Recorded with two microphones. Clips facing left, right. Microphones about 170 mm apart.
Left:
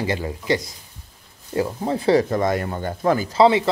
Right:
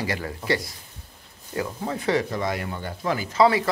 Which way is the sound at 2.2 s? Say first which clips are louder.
Left 6 dB; 45° left (ahead or behind).